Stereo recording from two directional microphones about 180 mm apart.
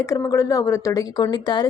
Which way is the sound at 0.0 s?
15° left (ahead or behind).